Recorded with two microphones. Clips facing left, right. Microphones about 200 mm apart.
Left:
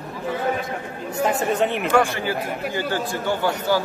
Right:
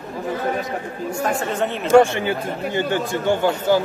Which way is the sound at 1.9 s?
25° right (ahead or behind).